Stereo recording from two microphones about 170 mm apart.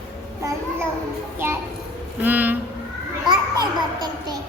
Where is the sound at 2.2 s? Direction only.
10° right (ahead or behind).